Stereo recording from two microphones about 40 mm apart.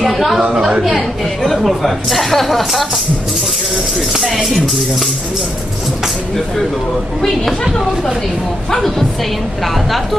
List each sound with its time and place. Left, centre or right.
0.0 s a woman's voice: centre
0.6 s a woman's voice: centre
0.8 s a woman's voice: centre
4.2 s a woman's voice: centre
7.2 s speech: centre
8.6 s speech: centre